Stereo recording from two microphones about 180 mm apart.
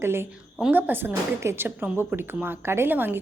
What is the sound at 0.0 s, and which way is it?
A woman's voice, 15° right (ahead or behind).